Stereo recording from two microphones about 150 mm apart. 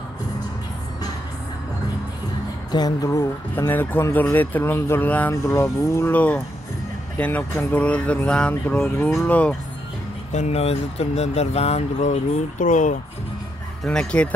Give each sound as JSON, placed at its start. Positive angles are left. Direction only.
{"t": 2.7, "sound": "speech", "side_deg": 25}
{"t": 10.3, "sound": "speech", "side_deg": 45}
{"t": 13.8, "sound": "speech", "side_deg": 5}